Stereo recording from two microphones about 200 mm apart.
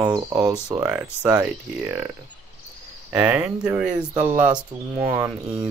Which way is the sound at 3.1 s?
10° right (ahead or behind).